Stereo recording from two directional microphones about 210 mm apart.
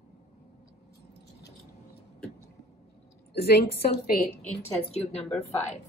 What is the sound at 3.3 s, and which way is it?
Speech, 50° left (ahead or behind).